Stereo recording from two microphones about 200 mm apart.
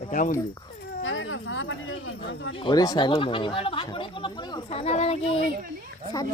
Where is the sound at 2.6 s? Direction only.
20° left (ahead or behind).